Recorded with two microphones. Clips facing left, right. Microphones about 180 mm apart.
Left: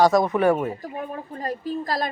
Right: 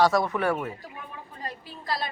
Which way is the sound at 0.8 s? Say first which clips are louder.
Left 10 dB; 45° left (ahead or behind).